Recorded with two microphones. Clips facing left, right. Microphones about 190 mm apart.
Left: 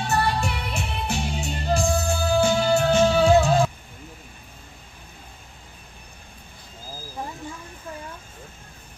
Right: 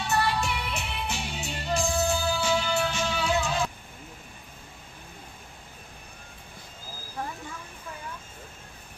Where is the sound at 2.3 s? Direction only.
50° left (ahead or behind).